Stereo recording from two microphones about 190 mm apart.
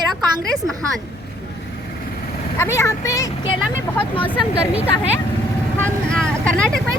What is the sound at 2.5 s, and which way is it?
Speech, 15° left (ahead or behind).